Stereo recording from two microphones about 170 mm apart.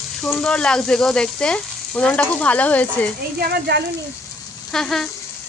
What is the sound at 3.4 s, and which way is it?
Speech, 70° right (ahead or behind).